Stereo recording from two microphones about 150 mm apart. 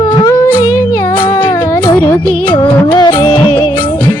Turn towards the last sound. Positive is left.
turn(degrees=30)  # may be behind; listen again after turning